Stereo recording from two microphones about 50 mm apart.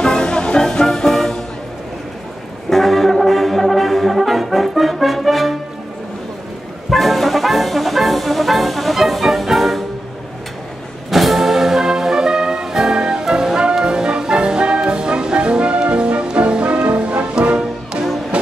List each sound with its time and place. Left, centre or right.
0.0 s music: centre
2.7 s brass instrument: centre
6.9 s brass instrument: centre
11.1 s brass instrument: centre
13.7 s music: centre